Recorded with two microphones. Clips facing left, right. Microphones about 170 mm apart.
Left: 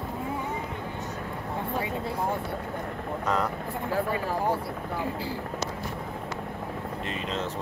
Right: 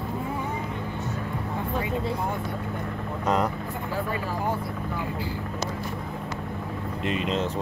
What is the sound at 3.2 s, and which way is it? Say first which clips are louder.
Speech: right 3 dB; 15° right (ahead or behind).